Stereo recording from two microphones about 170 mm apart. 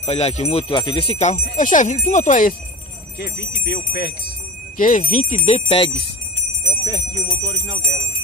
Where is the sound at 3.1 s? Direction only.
85° left.